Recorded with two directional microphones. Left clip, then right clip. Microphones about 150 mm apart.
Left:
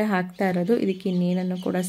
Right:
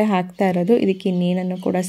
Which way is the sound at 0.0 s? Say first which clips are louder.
Right 5 dB; 15° right (ahead or behind).